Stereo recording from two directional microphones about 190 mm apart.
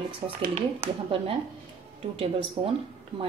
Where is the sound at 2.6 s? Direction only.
30° right (ahead or behind).